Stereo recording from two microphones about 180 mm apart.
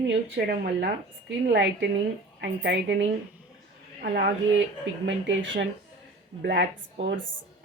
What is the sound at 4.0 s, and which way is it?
Speech, 65° right (ahead or behind).